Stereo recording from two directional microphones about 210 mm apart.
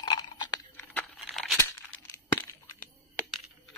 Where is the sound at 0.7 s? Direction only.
5° left (ahead or behind).